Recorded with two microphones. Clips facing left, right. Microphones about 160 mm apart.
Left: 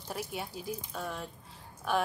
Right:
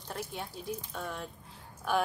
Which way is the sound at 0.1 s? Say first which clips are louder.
Left 1 dB; 5° left (ahead or behind).